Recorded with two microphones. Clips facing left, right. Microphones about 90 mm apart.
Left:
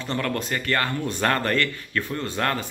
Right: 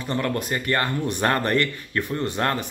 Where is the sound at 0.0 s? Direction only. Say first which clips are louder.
Right 1 dB; 15° right (ahead or behind).